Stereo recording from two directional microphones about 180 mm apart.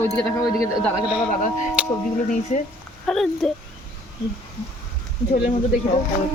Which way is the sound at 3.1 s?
5° left (ahead or behind).